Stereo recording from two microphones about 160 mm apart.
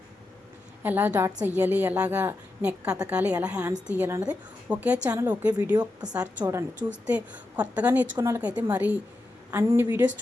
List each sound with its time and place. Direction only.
0.8 s a woman's voice: 10° right (ahead or behind)